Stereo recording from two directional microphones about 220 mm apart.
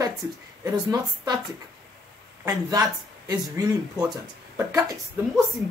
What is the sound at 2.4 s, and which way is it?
Speech, 15° right (ahead or behind).